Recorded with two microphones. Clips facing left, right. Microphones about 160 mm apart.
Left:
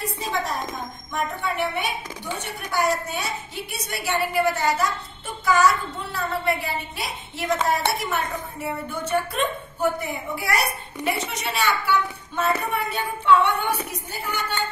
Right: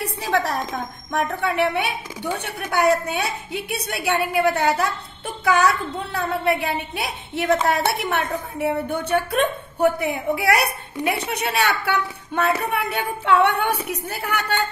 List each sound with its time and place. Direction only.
0.0 s a woman's voice: 70° right (ahead or behind)